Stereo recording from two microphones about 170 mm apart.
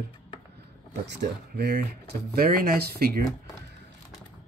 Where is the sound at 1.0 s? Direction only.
90° right; by 1.8 s 75° right (ahead or behind).